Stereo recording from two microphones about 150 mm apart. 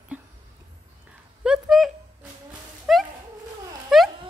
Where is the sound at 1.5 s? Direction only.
Centre (ahead or behind).